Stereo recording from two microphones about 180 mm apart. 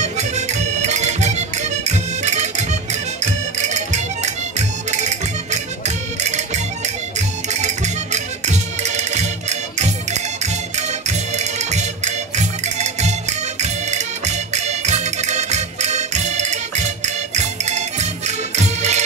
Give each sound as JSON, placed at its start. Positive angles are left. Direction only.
{"t": 0.0, "sound": "music", "side_deg": -40}